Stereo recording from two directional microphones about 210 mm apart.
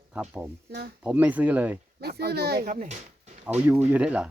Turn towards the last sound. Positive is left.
turn(degrees=-5)  # may be behind; listen again after turning